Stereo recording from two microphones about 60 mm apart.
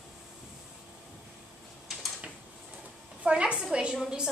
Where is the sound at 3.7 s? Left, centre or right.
Centre.